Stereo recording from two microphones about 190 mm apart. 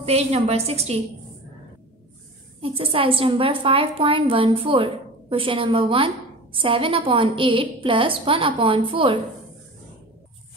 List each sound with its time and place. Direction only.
0.0 s a woman's voice: 35° right (ahead or behind)
2.6 s a woman's voice: 30° right (ahead or behind)